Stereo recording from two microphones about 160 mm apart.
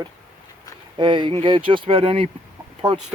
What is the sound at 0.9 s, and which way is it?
Speech, 30° right (ahead or behind).